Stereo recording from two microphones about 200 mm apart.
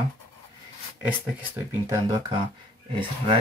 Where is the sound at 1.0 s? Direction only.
10° right (ahead or behind).